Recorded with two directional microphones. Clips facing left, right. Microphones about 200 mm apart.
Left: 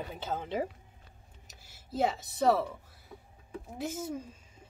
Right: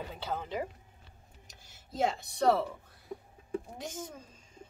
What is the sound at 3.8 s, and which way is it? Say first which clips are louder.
Speech: left 6 dB; 5° left (ahead or behind).